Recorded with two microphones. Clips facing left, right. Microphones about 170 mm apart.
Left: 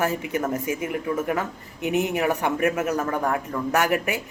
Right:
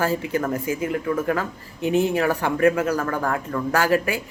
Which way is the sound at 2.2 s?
20° left (ahead or behind).